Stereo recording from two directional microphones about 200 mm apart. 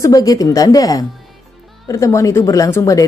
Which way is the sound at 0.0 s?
15° left (ahead or behind).